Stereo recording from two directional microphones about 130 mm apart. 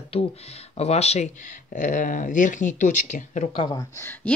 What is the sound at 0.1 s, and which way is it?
Speech, 55° left (ahead or behind).